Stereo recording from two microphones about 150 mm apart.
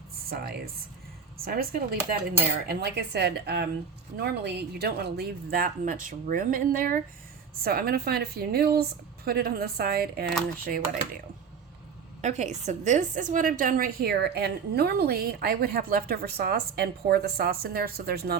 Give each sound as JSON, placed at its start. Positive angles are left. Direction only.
{"t": 0.3, "sound": "a woman's voice", "side_deg": -90}
{"t": 7.6, "sound": "a woman's voice", "side_deg": -85}
{"t": 10.6, "sound": "a woman's voice", "side_deg": -75}
{"t": 12.2, "sound": "a woman's voice", "side_deg": -50}